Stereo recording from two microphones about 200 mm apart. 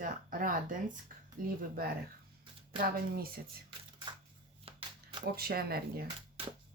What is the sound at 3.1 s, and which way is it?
Speech, 50° right (ahead or behind).